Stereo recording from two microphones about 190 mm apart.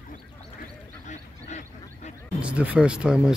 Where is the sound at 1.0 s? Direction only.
40° left (ahead or behind).